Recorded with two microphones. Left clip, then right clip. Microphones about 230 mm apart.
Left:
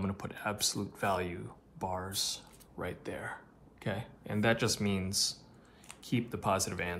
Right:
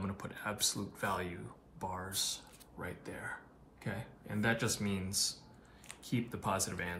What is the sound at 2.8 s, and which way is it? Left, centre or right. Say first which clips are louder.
Speech: left 5 dB; left.